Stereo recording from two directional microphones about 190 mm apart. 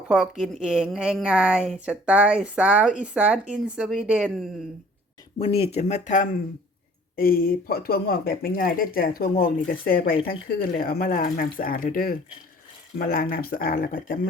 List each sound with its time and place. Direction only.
0.1 s speech: 5° right (ahead or behind)
5.4 s speech: 30° left (ahead or behind)
7.2 s speech: 50° left (ahead or behind)